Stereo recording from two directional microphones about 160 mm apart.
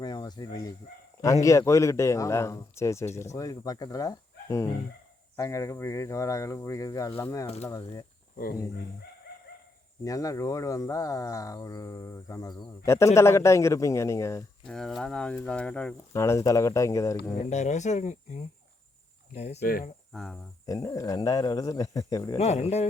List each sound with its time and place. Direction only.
0.0 s speech: 25° left (ahead or behind)
7.4 s speech: 40° left (ahead or behind)
10.0 s speech: 20° left (ahead or behind)
14.7 s speech: centre (ahead or behind)
16.1 s speech: 20° left (ahead or behind)
17.3 s speech: 45° left (ahead or behind)
19.6 s cricket: 65° left (ahead or behind)
20.1 s speech: 5° left (ahead or behind)
20.7 s speech: 20° left (ahead or behind)
22.4 s speech: 45° left (ahead or behind)